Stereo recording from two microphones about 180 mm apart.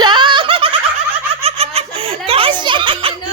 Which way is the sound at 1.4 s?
35° right (ahead or behind).